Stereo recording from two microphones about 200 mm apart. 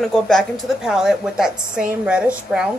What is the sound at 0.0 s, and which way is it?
A woman's voice, centre (ahead or behind).